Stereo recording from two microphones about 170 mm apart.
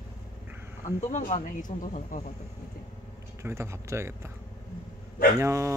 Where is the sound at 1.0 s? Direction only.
45° left (ahead or behind).